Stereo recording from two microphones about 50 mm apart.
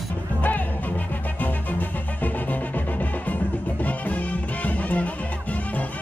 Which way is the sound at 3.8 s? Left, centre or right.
Left.